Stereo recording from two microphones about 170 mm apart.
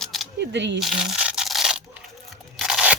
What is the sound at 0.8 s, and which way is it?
Crumpling, 5° right (ahead or behind).